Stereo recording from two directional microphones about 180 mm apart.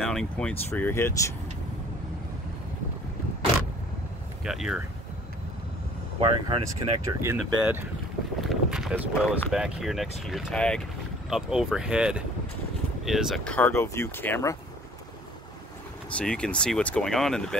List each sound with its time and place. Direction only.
0.0 s speech: 5° left (ahead or behind)
4.5 s speech: 5° right (ahead or behind)
6.1 s speech: 30° right (ahead or behind)
7.2 s speech: 15° right (ahead or behind)
8.4 s a sound: centre (ahead or behind)
9.5 s speech: 5° right (ahead or behind); by 14.6 s 15° left (ahead or behind)
16.2 s speech: 5° left (ahead or behind)